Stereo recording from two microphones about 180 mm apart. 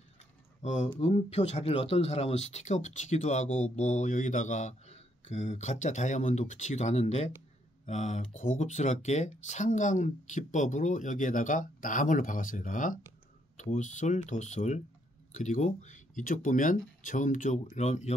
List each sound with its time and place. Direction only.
0.6 s speech: 40° left (ahead or behind)